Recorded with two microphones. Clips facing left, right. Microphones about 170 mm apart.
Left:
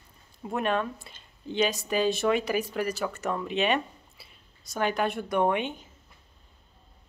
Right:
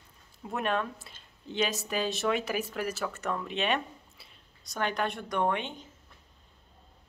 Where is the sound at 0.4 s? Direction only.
Centre (ahead or behind).